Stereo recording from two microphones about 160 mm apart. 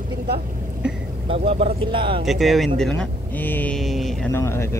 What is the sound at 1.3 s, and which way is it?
Speech, 35° right (ahead or behind).